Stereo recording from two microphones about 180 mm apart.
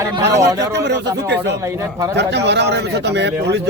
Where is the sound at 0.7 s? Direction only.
75° right (ahead or behind).